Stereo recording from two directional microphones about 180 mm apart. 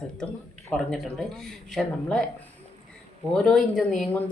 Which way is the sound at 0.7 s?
5° left (ahead or behind).